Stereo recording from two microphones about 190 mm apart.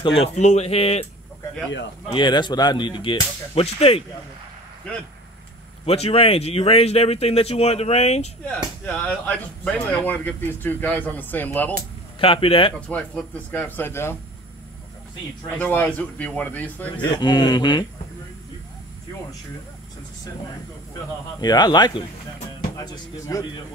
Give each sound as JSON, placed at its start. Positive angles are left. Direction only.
{"t": 0.0, "sound": "speech", "side_deg": 30}
{"t": 2.0, "sound": "speech", "side_deg": 25}
{"t": 5.9, "sound": "speech", "side_deg": 30}
{"t": 8.8, "sound": "speech", "side_deg": 10}
{"t": 12.2, "sound": "speech", "side_deg": 30}
{"t": 12.8, "sound": "speech", "side_deg": 5}
{"t": 15.5, "sound": "speech", "side_deg": 10}
{"t": 17.0, "sound": "speech", "side_deg": 20}
{"t": 21.4, "sound": "speech", "side_deg": 20}